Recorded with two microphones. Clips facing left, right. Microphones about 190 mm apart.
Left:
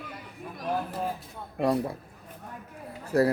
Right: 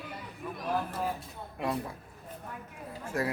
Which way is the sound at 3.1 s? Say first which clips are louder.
Left 9 dB; 35° left (ahead or behind).